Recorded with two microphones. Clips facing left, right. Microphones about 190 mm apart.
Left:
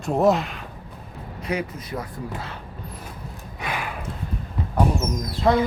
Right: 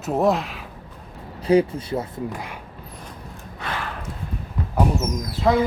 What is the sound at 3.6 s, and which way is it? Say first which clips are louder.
Gasp: left 1 dB; 10° left (ahead or behind).